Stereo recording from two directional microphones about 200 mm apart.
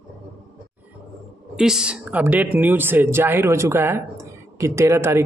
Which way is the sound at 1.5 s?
5° right (ahead or behind).